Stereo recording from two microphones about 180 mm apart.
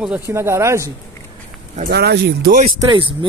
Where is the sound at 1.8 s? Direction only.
65° right (ahead or behind).